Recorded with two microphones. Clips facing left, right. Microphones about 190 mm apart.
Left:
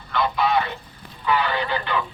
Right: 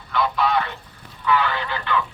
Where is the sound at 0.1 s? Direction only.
Centre (ahead or behind).